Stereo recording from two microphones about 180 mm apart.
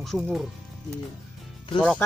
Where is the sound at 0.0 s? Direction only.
Centre (ahead or behind).